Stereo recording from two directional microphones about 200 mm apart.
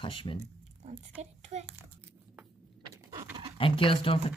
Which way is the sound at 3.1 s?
15° right (ahead or behind).